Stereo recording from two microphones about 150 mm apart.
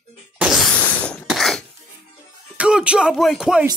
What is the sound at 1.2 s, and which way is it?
Dishes, centre (ahead or behind).